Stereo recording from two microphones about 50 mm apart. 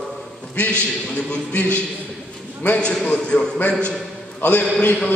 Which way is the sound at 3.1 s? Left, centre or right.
Centre.